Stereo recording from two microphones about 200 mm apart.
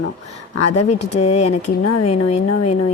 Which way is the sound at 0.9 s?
35° left (ahead or behind).